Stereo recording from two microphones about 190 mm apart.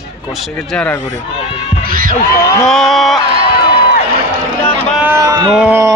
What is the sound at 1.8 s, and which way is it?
Heart sounds, 50° right (ahead or behind).